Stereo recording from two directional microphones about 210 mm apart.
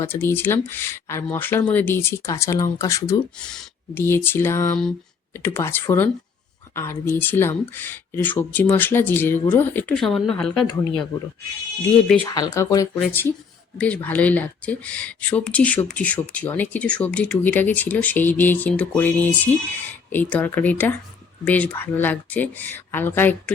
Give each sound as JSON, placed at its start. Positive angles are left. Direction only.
{"t": 0.0, "sound": "speech", "side_deg": 10}
{"t": 12.2, "sound": "speech", "side_deg": 15}